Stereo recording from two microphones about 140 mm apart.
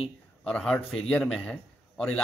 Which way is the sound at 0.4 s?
5° left (ahead or behind).